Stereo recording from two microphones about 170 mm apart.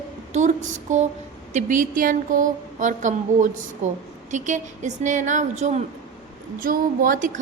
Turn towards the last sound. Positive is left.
turn(degrees=-55)  # may be behind; listen again after turning